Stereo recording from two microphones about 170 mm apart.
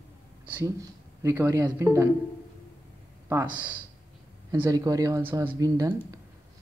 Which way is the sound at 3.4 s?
25° right (ahead or behind).